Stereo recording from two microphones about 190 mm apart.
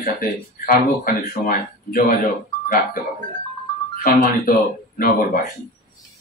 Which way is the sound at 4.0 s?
50° left (ahead or behind).